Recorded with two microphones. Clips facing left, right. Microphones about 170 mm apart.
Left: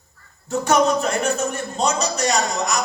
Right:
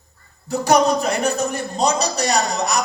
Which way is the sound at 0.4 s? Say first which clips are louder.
Right 2 dB; 35° right (ahead or behind).